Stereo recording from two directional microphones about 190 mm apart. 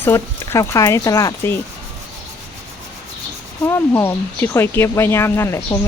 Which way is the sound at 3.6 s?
10° left (ahead or behind).